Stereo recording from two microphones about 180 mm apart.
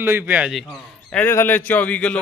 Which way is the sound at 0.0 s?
10° right (ahead or behind).